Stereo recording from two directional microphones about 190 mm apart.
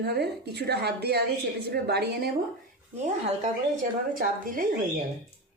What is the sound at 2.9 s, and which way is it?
A woman's voice, 35° right (ahead or behind).